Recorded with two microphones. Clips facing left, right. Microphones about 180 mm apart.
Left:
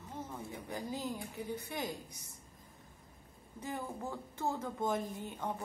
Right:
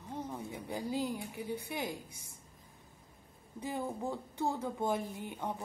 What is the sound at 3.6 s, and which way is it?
Speech, 15° right (ahead or behind).